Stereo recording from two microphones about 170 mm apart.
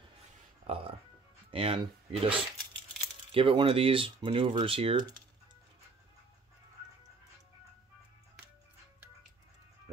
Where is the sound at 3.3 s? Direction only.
30° right (ahead or behind).